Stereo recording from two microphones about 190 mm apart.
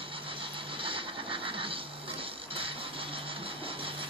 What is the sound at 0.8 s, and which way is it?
Scratch, 25° right (ahead or behind).